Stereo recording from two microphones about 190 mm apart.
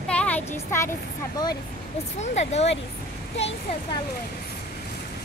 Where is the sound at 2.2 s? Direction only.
35° left (ahead or behind).